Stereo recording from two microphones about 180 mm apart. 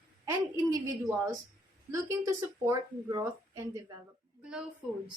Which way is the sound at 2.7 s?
20° right (ahead or behind).